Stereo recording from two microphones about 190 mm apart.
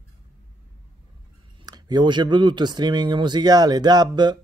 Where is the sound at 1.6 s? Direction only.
20° right (ahead or behind).